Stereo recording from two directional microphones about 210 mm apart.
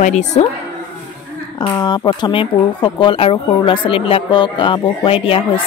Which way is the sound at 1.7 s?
15° left (ahead or behind).